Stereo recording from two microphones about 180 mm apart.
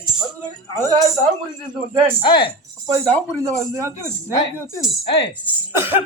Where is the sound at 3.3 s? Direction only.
20° right (ahead or behind).